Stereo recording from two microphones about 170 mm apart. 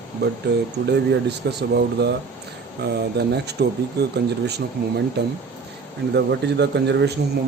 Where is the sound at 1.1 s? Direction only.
75° right (ahead or behind).